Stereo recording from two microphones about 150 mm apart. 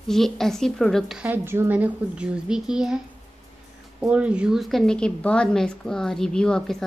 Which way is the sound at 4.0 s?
5° right (ahead or behind).